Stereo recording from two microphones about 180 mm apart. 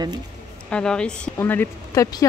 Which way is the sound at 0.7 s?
5° left (ahead or behind).